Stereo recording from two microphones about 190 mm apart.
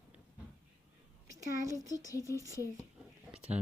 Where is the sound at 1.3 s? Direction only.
15° right (ahead or behind).